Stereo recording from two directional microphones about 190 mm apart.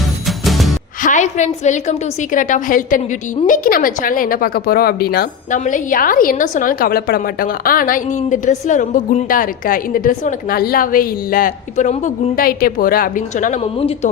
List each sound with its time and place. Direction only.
0.3 s music: centre (ahead or behind)
1.0 s a woman's voice: 40° left (ahead or behind)